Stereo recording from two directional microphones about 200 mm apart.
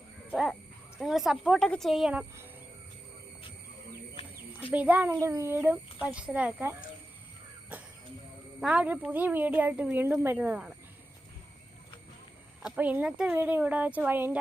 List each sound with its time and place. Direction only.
0.9 s speech: centre (ahead or behind)
4.7 s speech: 10° right (ahead or behind)
8.6 s speech: 5° right (ahead or behind)
12.6 s speech: 5° right (ahead or behind)